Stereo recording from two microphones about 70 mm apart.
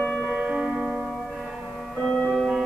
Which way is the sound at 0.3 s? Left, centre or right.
Centre.